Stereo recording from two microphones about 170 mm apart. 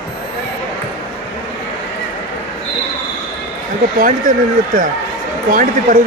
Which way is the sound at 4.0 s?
55° right (ahead or behind).